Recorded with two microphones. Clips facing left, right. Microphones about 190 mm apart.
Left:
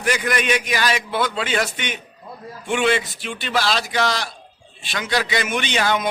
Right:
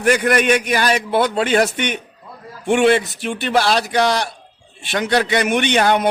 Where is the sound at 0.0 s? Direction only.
55° right (ahead or behind).